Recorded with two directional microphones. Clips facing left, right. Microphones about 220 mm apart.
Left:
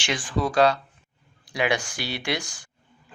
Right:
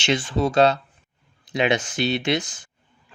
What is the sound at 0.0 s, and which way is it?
Speech, 25° right (ahead or behind).